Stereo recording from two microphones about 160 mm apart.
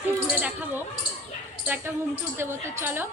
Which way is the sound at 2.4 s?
15° right (ahead or behind).